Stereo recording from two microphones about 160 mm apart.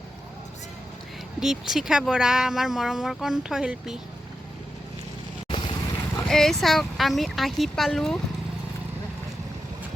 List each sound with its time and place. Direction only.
1.4 s speech: centre (ahead or behind)
5.5 s vehicle: 30° left (ahead or behind)
6.2 s speech: centre (ahead or behind)